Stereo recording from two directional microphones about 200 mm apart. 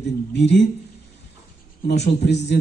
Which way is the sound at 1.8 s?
60° left (ahead or behind).